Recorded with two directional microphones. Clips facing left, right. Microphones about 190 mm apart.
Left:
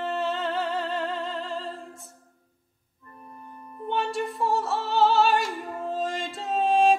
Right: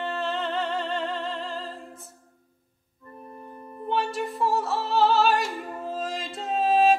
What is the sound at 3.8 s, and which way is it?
Music, centre (ahead or behind).